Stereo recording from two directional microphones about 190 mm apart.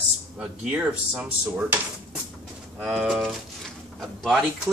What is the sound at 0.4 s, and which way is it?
Speech, 5° right (ahead or behind).